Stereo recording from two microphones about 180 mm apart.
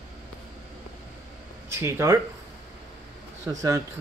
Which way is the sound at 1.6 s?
15° right (ahead or behind).